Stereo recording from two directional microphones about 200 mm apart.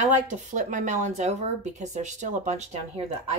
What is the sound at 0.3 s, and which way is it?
A woman's voice, 40° right (ahead or behind).